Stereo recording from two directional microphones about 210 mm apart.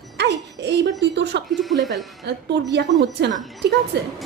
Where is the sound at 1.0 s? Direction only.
55° right (ahead or behind).